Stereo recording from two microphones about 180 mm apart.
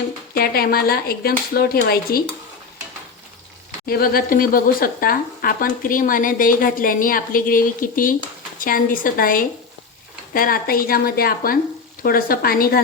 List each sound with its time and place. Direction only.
0.3 s speech: 60° left (ahead or behind)
3.8 s speech: 55° left (ahead or behind)